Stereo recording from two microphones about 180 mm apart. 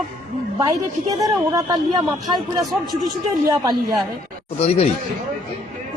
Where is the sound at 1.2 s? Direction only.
20° right (ahead or behind).